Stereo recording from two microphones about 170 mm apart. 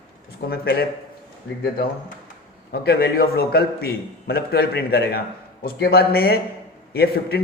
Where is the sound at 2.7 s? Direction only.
65° left (ahead or behind).